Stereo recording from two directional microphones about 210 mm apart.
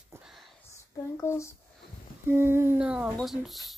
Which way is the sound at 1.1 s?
15° left (ahead or behind).